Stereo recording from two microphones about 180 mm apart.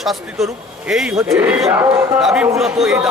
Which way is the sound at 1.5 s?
5° right (ahead or behind).